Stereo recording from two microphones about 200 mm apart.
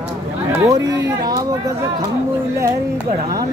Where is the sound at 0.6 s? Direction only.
20° right (ahead or behind).